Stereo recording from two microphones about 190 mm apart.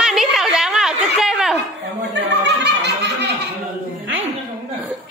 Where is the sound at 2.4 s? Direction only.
65° right (ahead or behind).